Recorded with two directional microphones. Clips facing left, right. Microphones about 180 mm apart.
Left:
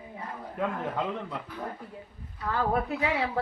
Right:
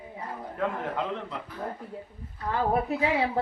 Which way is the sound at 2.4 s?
20° right (ahead or behind).